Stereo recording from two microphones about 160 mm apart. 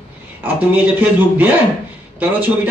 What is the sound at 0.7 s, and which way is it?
A man's voice, 10° right (ahead or behind).